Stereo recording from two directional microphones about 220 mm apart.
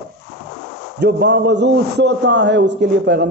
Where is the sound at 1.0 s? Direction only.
50° right (ahead or behind).